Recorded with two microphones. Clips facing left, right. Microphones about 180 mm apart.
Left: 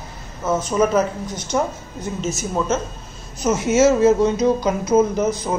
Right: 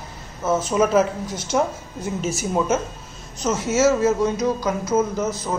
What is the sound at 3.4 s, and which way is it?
Speech, 20° left (ahead or behind).